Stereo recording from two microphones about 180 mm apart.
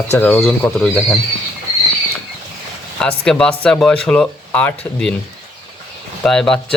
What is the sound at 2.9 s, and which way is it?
Speech, 5° left (ahead or behind).